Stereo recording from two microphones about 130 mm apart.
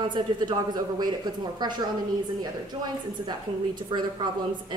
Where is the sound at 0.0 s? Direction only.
35° right (ahead or behind).